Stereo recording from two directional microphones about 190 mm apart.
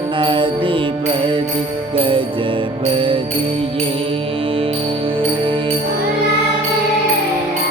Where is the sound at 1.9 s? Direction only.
25° right (ahead or behind).